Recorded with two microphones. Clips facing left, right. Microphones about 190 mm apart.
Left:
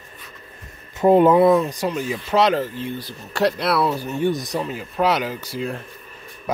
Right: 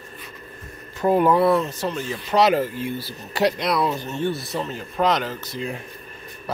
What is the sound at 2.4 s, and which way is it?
Speech, 10° right (ahead or behind).